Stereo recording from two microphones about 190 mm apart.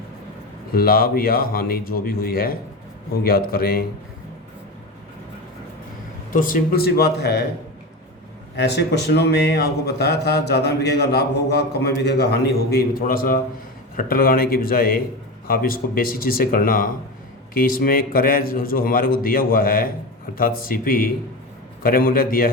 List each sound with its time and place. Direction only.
0.7 s a man's voice: 50° left (ahead or behind)
6.3 s a man's voice: 50° left (ahead or behind)
8.5 s a man's voice: 60° left (ahead or behind)